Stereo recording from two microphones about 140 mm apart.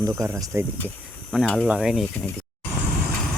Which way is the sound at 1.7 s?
5° right (ahead or behind).